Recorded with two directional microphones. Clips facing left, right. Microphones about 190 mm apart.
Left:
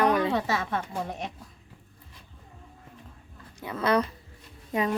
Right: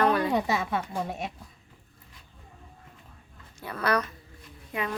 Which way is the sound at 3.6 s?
20° left (ahead or behind).